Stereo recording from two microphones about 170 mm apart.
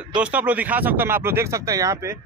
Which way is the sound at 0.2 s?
10° right (ahead or behind).